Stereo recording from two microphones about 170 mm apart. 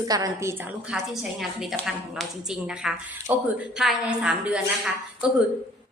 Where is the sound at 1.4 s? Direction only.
Centre (ahead or behind).